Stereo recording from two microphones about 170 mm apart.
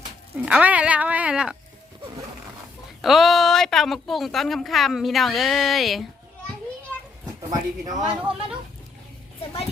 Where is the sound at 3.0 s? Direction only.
Centre (ahead or behind).